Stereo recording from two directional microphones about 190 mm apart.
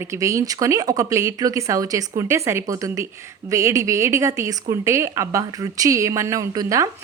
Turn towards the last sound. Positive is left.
turn(degrees=-20)  # may be behind; listen again after turning